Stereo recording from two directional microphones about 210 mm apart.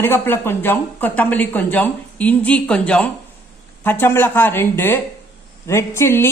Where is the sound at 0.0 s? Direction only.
10° left (ahead or behind).